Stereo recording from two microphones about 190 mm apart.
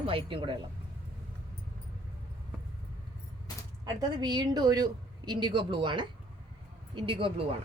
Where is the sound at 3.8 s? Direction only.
20° right (ahead or behind).